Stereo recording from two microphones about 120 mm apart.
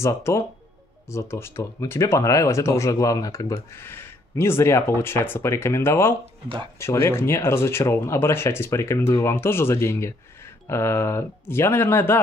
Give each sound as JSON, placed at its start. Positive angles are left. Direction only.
{"t": 0.0, "sound": "speech", "side_deg": 25}